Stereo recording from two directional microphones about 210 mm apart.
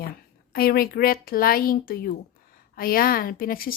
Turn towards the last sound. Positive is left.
turn(degrees=45)  # may be behind; listen again after turning